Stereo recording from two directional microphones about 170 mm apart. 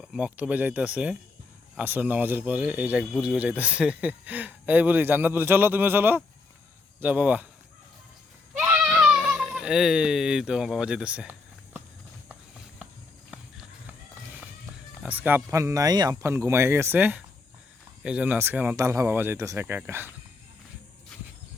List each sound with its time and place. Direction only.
0.0 s speech: 5° right (ahead or behind)
8.5 s a sound: 10° right (ahead or behind)
12.3 s walk: 5° right (ahead or behind)
15.0 s speech: 10° right (ahead or behind)